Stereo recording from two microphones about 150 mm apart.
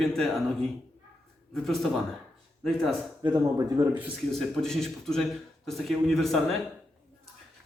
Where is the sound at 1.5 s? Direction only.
Centre (ahead or behind).